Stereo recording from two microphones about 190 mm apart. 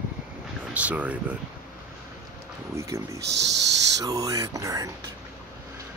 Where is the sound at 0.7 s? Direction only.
5° right (ahead or behind).